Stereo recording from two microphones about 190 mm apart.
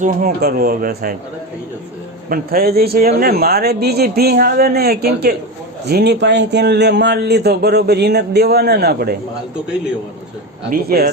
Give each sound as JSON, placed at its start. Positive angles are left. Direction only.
{"t": 0.0, "sound": "speech", "side_deg": -50}
{"t": 2.3, "sound": "a man's voice", "side_deg": -50}
{"t": 10.7, "sound": "speech", "side_deg": -55}